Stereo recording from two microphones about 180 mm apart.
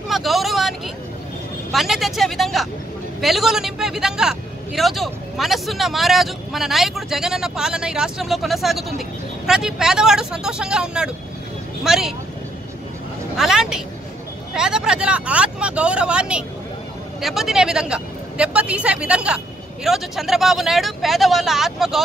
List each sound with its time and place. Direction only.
0.1 s a man's voice: centre (ahead or behind)
13.4 s a man's voice: centre (ahead or behind)